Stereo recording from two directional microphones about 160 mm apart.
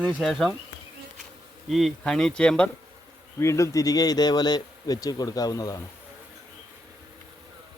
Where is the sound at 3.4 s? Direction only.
20° left (ahead or behind).